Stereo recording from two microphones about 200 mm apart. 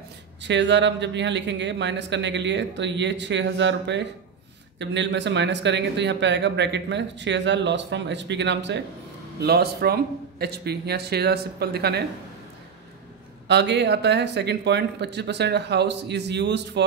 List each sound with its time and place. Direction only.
0.4 s speech: 60° right (ahead or behind)
13.5 s speech: 55° right (ahead or behind)